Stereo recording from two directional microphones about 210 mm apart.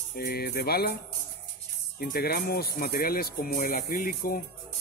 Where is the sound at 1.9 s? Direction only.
45° left (ahead or behind).